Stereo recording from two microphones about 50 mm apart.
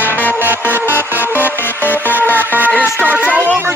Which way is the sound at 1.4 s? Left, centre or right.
Left.